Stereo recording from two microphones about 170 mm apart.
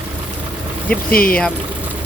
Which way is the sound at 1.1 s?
60° left (ahead or behind).